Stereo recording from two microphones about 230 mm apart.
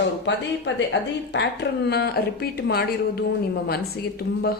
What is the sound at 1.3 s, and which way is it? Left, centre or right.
A woman's voice, left.